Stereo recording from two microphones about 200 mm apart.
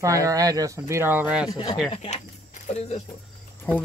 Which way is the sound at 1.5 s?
20° left (ahead or behind).